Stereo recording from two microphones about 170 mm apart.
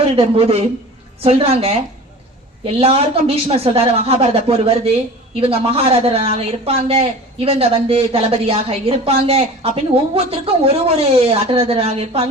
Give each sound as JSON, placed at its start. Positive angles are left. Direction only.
{"t": 0.2, "sound": "a woman's voice", "side_deg": -35}
{"t": 2.7, "sound": "a woman's voice", "side_deg": -35}